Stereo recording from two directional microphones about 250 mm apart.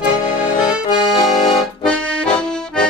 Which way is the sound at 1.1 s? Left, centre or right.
Left.